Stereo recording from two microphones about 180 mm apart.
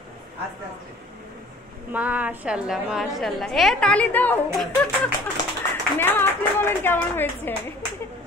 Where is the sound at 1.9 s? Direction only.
10° right (ahead or behind).